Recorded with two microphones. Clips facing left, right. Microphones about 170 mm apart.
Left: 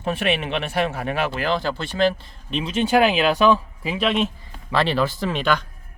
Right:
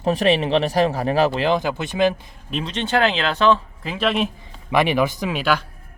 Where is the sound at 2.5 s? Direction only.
Centre (ahead or behind).